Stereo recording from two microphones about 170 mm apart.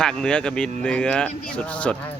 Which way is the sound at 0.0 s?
5° left (ahead or behind).